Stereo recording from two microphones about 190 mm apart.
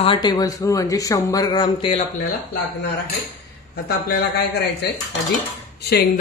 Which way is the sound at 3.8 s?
55° left (ahead or behind).